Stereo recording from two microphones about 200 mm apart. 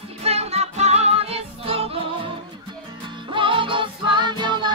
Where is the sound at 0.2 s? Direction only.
30° right (ahead or behind).